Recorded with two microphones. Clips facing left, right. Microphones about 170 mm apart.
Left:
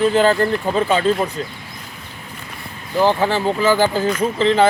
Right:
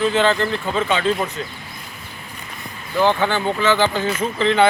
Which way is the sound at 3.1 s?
30° left (ahead or behind).